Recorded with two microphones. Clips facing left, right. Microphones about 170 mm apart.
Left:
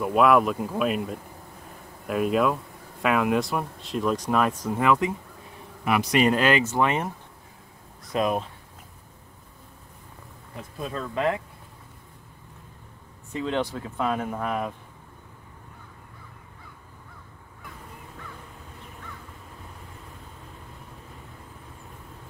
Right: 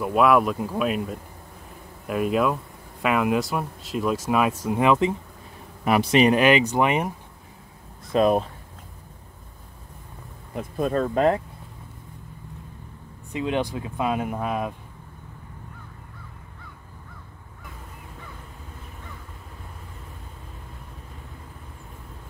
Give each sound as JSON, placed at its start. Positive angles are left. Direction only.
{"t": 0.0, "sound": "speech", "side_deg": 0}
{"t": 8.1, "sound": "speech", "side_deg": -35}
{"t": 10.5, "sound": "speech", "side_deg": -50}
{"t": 13.3, "sound": "speech", "side_deg": -15}